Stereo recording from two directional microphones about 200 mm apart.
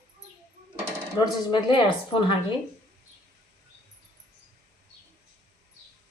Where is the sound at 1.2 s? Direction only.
25° left (ahead or behind).